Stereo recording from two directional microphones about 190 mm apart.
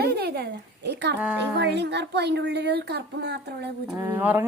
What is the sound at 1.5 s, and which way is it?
Speech, 65° right (ahead or behind).